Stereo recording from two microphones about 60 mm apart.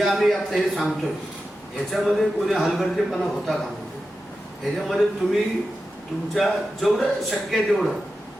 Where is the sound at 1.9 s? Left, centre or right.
Centre.